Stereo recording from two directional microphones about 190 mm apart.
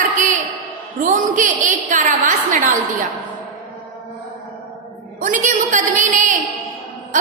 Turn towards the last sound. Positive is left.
turn(degrees=-45)  # may be behind; listen again after turning